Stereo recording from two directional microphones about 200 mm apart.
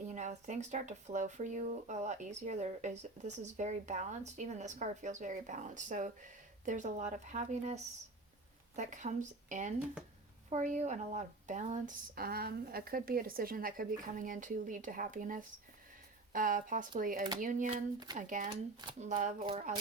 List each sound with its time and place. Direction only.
0.1 s speech: 35° right (ahead or behind)
19.5 s speech: 30° right (ahead or behind)